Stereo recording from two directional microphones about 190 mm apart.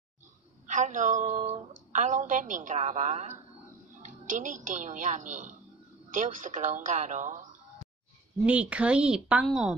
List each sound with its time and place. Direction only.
0.7 s a woman's voice: 40° right (ahead or behind)
8.5 s a woman's voice: 5° right (ahead or behind)